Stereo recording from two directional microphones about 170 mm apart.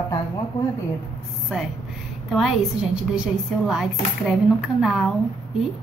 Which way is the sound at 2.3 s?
Centre (ahead or behind).